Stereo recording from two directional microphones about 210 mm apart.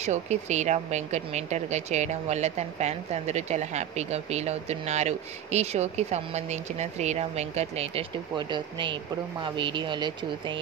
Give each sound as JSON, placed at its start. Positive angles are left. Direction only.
{"t": 0.0, "sound": "speech", "side_deg": -35}